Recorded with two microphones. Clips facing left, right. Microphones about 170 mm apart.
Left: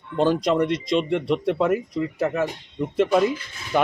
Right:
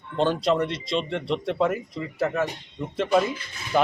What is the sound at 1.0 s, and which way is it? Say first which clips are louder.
Speech: left 2 dB; 10° left (ahead or behind).